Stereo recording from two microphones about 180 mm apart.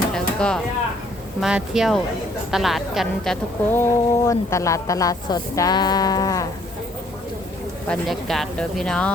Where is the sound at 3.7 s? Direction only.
15° left (ahead or behind).